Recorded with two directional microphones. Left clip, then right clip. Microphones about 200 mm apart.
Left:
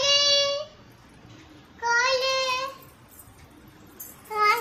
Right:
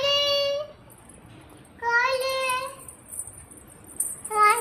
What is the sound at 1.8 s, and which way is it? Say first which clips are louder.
Child singing: even; 5° left (ahead or behind).